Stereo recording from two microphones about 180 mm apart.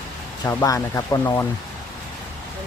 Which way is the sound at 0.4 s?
15° left (ahead or behind).